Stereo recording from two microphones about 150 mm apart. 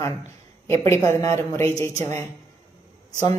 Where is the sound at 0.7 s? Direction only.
20° left (ahead or behind).